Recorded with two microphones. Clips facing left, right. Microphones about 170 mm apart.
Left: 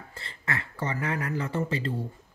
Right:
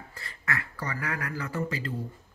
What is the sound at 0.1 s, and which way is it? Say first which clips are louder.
Speech: left 1 dB; 25° left (ahead or behind).